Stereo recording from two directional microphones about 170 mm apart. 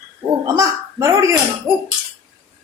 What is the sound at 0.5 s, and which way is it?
Speech, 20° right (ahead or behind).